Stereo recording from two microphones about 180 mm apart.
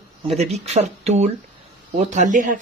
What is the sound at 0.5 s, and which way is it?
Speech, 35° right (ahead or behind).